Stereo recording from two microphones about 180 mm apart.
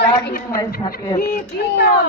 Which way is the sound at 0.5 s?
25° left (ahead or behind).